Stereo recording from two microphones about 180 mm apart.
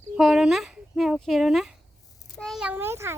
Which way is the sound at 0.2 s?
Centre (ahead or behind).